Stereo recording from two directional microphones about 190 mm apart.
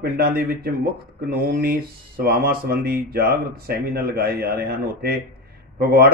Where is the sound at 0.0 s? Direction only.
55° right (ahead or behind).